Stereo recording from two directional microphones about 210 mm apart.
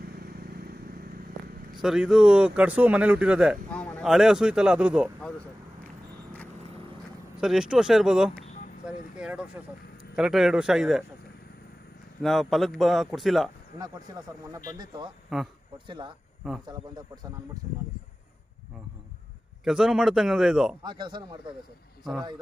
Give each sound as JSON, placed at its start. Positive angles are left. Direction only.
{"t": 0.0, "sound": "vehicle", "side_deg": -45}
{"t": 1.8, "sound": "speech", "side_deg": -5}
{"t": 7.3, "sound": "speech", "side_deg": -5}
{"t": 12.2, "sound": "speech", "side_deg": 0}
{"t": 15.3, "sound": "speech", "side_deg": 0}
{"t": 16.6, "sound": "speech", "side_deg": -20}
{"t": 19.6, "sound": "speech", "side_deg": -5}
{"t": 20.8, "sound": "speech", "side_deg": -20}